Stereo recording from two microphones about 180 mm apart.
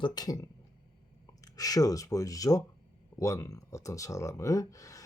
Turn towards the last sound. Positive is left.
turn(degrees=20)  # may be behind; listen again after turning